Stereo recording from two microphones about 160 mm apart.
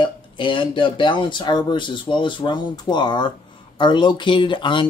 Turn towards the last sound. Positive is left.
turn(degrees=30)  # may be behind; listen again after turning